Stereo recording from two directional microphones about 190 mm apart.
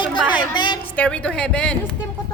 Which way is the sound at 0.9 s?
10° left (ahead or behind).